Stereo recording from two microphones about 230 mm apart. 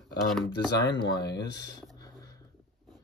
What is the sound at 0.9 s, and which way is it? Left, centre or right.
Speech, centre.